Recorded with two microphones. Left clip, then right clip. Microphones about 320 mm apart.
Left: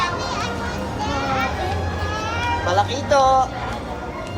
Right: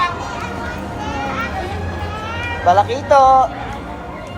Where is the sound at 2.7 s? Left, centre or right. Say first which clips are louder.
Right 8 dB; centre.